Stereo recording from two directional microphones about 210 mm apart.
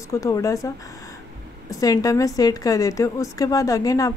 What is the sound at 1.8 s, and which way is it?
A woman's voice, 15° left (ahead or behind).